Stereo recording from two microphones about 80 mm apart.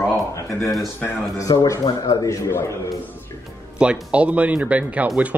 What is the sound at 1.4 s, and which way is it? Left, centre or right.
Speech, left.